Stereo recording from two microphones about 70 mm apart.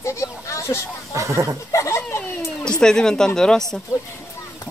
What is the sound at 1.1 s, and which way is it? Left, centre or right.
Speech, right.